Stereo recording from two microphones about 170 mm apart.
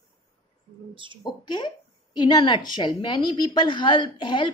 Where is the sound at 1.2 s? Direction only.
25° left (ahead or behind).